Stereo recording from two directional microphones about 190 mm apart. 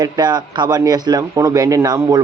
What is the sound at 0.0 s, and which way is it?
Speech, 20° right (ahead or behind).